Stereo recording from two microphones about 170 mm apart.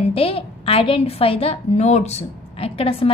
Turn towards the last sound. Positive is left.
turn(degrees=35)  # may be behind; listen again after turning